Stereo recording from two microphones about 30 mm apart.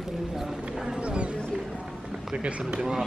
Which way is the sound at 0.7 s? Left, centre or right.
Centre.